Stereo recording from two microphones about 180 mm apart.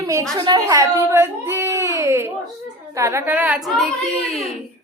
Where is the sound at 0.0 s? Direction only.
20° right (ahead or behind); by 3.8 s 5° right (ahead or behind).